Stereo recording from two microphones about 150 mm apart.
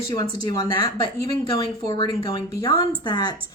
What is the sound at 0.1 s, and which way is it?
Speech, 25° left (ahead or behind).